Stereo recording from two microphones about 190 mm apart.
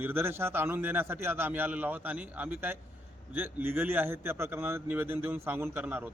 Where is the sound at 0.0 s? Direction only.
10° right (ahead or behind).